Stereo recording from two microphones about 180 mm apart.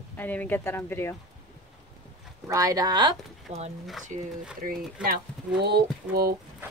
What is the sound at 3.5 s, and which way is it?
Speech, 35° right (ahead or behind).